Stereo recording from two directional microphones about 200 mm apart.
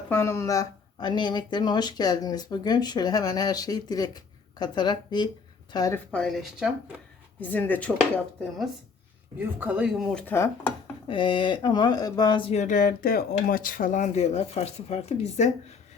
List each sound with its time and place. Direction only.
0.1 s speech: 10° left (ahead or behind)
6.1 s speech: 5° left (ahead or behind)
7.4 s speech: 10° left (ahead or behind)
9.4 s speech: 10° right (ahead or behind)
10.2 s speech: 10° left (ahead or behind)
11.1 s speech: 25° left (ahead or behind)